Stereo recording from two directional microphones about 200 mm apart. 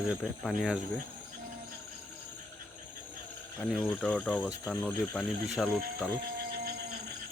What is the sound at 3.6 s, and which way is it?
Speech, centre (ahead or behind).